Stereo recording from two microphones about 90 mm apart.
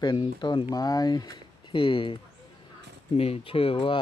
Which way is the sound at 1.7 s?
75° left (ahead or behind).